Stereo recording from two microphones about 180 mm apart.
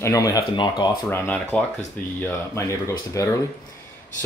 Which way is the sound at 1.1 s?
10° left (ahead or behind).